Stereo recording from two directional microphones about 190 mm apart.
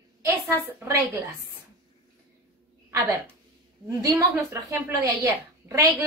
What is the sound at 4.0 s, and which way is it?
A woman's voice, 15° right (ahead or behind).